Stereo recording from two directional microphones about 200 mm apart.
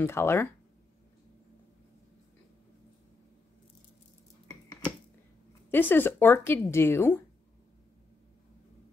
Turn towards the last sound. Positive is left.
turn(degrees=10)  # may be behind; listen again after turning